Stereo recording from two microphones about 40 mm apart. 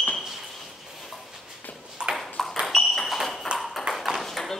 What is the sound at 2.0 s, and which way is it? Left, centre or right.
Ping, right.